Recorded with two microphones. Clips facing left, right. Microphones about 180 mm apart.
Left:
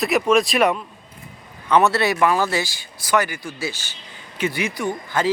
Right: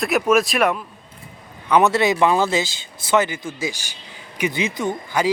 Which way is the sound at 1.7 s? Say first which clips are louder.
Right 1 dB; 15° right (ahead or behind).